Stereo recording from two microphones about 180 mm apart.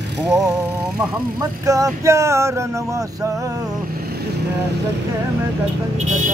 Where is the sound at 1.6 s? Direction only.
20° right (ahead or behind).